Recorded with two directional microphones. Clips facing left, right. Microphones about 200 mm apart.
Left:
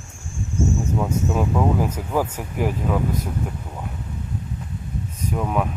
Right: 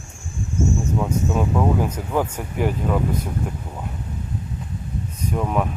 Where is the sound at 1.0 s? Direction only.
5° left (ahead or behind).